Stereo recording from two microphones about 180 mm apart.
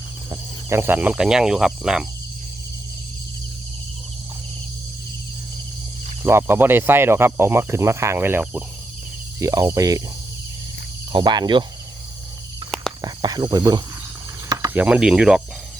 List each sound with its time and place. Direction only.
0.3 s cricket: 15° right (ahead or behind)
6.2 s speech: 10° right (ahead or behind)
9.4 s cricket: 20° right (ahead or behind)
11.1 s cricket: 25° right (ahead or behind)
13.0 s speech: 20° right (ahead or behind)
14.7 s cricket: 10° right (ahead or behind)